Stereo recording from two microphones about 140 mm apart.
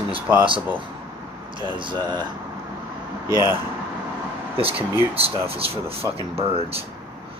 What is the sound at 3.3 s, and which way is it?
Speech, 30° left (ahead or behind).